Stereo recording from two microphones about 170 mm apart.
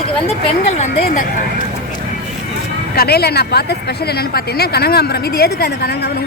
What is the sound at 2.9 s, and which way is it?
Speech, 70° left (ahead or behind).